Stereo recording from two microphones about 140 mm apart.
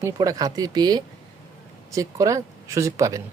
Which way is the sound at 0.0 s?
25° right (ahead or behind).